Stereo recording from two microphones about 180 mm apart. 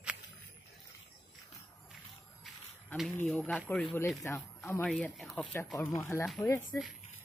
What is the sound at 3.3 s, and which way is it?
Speech, 5° left (ahead or behind).